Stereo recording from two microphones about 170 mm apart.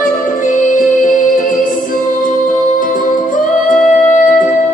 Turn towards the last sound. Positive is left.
turn(degrees=50)  # may be behind; listen again after turning